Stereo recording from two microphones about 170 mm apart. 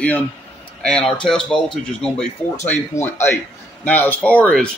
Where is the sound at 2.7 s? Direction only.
15° left (ahead or behind).